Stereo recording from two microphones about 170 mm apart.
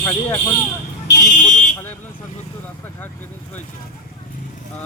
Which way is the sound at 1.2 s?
45° left (ahead or behind).